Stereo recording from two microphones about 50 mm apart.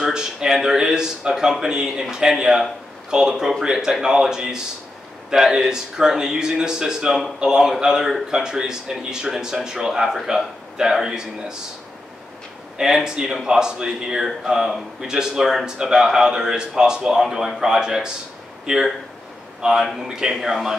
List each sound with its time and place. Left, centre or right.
0.0 s speech: centre
12.7 s speech: centre